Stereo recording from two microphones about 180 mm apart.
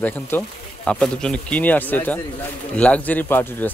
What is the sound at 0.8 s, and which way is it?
A man's voice, 5° left (ahead or behind).